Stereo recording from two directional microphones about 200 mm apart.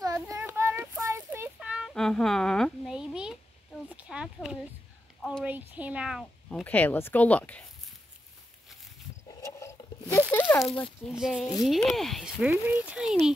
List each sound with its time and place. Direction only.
0.0 s child singing: 15° right (ahead or behind)
3.9 s speech: 5° right (ahead or behind)
6.6 s speech: 10° left (ahead or behind)
9.4 s a sound: 15° left (ahead or behind)
10.3 s speech: 10° left (ahead or behind)